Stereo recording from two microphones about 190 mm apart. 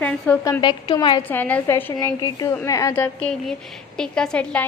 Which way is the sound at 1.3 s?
10° left (ahead or behind).